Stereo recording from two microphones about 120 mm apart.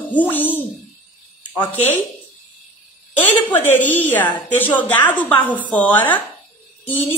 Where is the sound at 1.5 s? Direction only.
35° left (ahead or behind).